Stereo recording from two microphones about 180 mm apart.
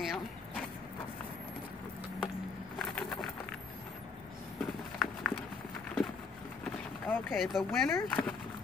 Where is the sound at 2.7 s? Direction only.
Centre (ahead or behind).